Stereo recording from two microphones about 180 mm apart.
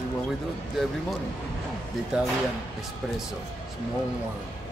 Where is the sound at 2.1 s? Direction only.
5° right (ahead or behind).